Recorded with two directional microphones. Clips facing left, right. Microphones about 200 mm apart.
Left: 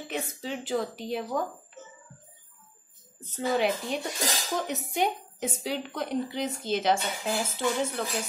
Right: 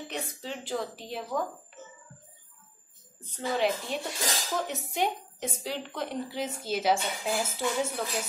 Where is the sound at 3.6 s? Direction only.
Centre (ahead or behind).